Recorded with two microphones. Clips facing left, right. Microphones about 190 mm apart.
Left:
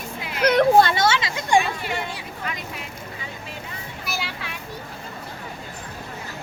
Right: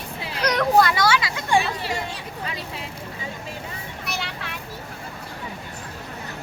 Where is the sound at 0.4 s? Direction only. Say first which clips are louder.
Left 3 dB; 30° left (ahead or behind).